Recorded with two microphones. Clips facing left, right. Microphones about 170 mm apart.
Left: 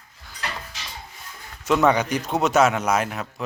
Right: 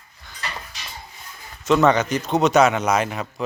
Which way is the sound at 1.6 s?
10° left (ahead or behind).